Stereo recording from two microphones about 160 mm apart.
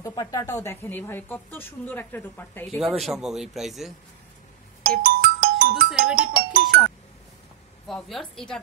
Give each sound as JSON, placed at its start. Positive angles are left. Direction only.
{"t": 0.0, "sound": "speech", "side_deg": 20}
{"t": 2.8, "sound": "a man's voice", "side_deg": -5}
{"t": 4.8, "sound": "music", "side_deg": -70}
{"t": 7.9, "sound": "a man's voice", "side_deg": 0}